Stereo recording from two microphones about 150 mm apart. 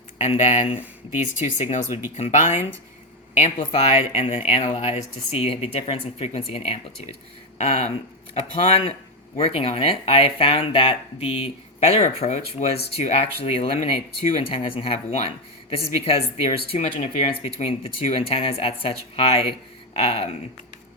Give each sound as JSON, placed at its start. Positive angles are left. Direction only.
{"t": 0.2, "sound": "speech", "side_deg": 50}
{"t": 0.6, "sound": "speech", "side_deg": 40}
{"t": 1.1, "sound": "speech", "side_deg": 55}
{"t": 19.9, "sound": "a sound", "side_deg": 40}